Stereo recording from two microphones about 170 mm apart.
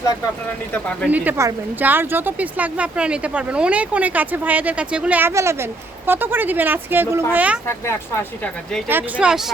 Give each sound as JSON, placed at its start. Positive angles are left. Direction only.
{"t": 1.0, "sound": "speech", "side_deg": -10}
{"t": 7.7, "sound": "speech", "side_deg": 15}
{"t": 8.9, "sound": "speech", "side_deg": -10}